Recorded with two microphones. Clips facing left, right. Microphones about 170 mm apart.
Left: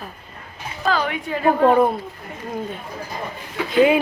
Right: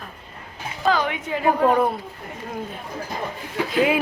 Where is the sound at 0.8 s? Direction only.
20° right (ahead or behind).